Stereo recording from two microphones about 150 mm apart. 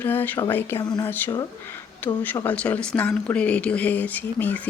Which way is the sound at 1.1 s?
15° left (ahead or behind).